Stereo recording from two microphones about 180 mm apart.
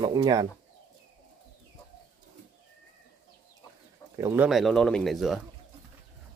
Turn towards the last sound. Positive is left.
turn(degrees=0)  # may be behind; listen again after turning